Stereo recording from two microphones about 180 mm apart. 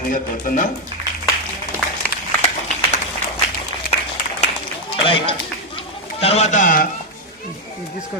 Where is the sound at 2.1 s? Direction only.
55° left (ahead or behind).